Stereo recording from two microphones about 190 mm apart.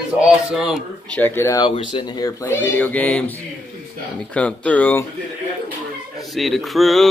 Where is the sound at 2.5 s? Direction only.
10° left (ahead or behind).